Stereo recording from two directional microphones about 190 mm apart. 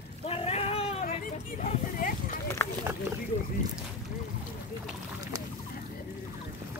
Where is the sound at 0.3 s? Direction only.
30° left (ahead or behind).